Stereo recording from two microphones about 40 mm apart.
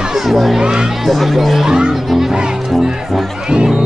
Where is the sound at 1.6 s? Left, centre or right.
Centre.